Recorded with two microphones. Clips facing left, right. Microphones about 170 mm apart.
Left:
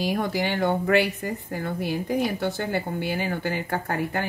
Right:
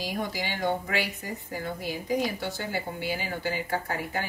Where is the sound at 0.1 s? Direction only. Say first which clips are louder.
Left 7 dB; 60° left (ahead or behind).